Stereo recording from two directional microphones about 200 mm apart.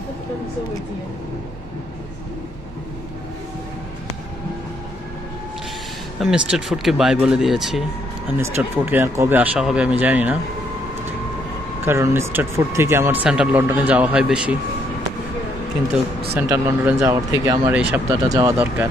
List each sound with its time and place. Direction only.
6.1 s speech: 5° right (ahead or behind)
11.8 s speech: 10° right (ahead or behind)
16.3 s speech: 10° right (ahead or behind)